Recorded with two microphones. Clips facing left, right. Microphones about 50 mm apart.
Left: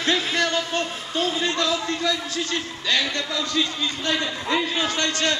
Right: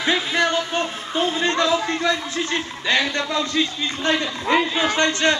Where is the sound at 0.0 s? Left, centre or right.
Centre.